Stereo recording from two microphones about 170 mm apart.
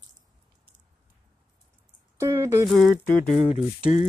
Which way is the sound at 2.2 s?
15° right (ahead or behind).